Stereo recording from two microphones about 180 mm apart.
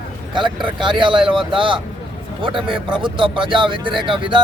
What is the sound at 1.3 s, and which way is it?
Speech, 30° right (ahead or behind).